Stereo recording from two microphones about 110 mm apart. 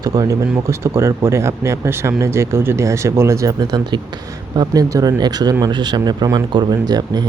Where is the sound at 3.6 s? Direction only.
45° right (ahead or behind).